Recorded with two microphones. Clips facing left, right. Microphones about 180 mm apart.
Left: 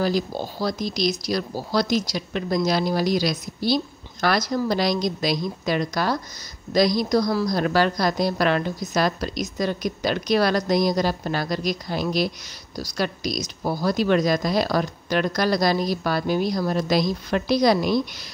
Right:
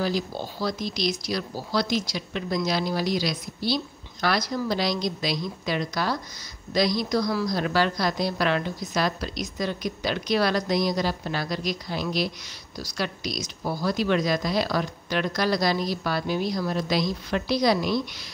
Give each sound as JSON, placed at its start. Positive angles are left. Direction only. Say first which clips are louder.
{"t": 0.0, "sound": "speech", "louder": "left 4 dB", "side_deg": 45}